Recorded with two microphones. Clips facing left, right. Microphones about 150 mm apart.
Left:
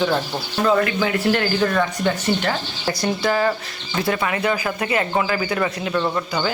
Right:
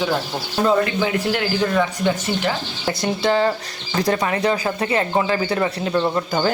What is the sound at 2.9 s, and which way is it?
Speech, 25° right (ahead or behind).